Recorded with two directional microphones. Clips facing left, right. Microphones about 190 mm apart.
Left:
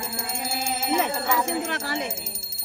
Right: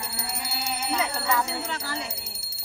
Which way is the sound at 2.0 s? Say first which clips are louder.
Left 6 dB; 50° left (ahead or behind).